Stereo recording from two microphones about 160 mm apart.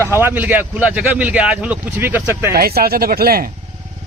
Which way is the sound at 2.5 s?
75° right (ahead or behind).